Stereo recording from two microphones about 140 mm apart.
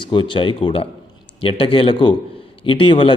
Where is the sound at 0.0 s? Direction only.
35° left (ahead or behind).